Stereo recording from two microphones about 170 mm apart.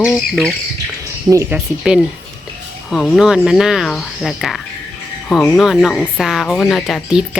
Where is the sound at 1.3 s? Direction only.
15° right (ahead or behind).